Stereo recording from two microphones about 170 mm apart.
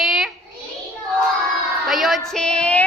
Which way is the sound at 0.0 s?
Centre (ahead or behind).